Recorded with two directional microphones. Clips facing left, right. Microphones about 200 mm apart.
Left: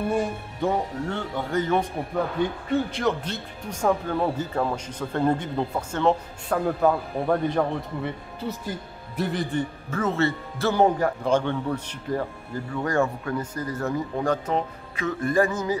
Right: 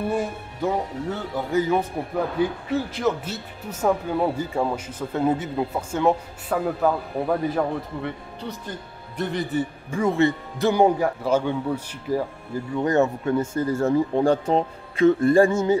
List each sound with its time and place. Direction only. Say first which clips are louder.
0.1 s speech: even; centre (ahead or behind)
12.7 s speech: right 4 dB; 20° right (ahead or behind)